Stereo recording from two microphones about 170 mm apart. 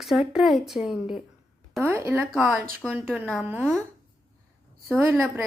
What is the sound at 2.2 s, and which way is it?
Speech, centre (ahead or behind).